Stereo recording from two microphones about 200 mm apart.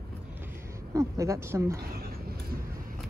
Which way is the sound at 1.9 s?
50° right (ahead or behind).